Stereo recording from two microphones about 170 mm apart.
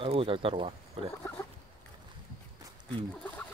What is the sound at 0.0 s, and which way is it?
Speech, 30° right (ahead or behind).